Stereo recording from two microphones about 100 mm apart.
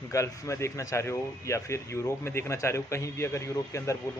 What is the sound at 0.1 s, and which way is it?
Speech, 30° left (ahead or behind).